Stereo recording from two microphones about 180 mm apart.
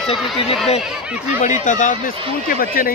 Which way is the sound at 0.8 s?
5° right (ahead or behind).